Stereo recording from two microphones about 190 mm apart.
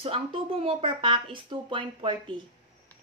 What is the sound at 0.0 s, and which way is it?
Speech, 30° right (ahead or behind).